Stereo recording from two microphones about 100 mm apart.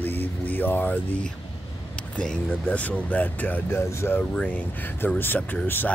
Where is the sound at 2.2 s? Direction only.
10° left (ahead or behind).